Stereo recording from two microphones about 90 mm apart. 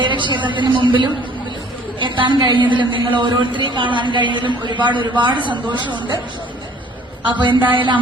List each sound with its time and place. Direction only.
0.0 s a woman's voice: 65° right (ahead or behind)
7.3 s a woman's voice: 60° right (ahead or behind)